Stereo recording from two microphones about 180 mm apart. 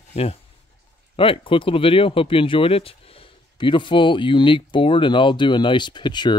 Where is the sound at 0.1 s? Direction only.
35° left (ahead or behind).